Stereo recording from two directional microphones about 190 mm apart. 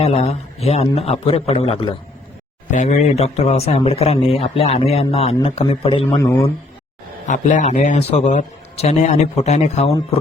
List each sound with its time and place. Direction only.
0.0 s speech: 35° left (ahead or behind)
7.3 s speech: 40° left (ahead or behind)